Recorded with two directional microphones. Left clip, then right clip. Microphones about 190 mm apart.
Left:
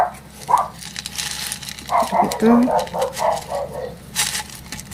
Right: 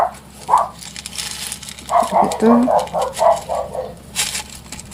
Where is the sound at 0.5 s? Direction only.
5° left (ahead or behind).